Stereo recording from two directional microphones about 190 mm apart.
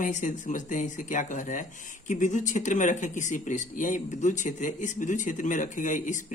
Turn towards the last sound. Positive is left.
turn(degrees=45)  # may be behind; listen again after turning